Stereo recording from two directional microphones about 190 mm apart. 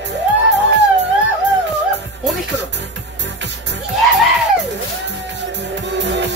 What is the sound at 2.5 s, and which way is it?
Music, 70° right (ahead or behind).